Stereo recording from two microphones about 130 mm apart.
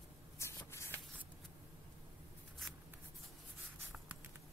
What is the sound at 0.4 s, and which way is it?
Spray, 20° left (ahead or behind).